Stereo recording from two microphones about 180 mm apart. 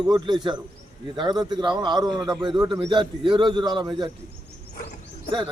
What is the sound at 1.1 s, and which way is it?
Speech, 25° right (ahead or behind).